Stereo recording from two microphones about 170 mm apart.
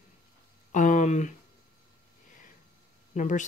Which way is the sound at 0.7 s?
50° left (ahead or behind).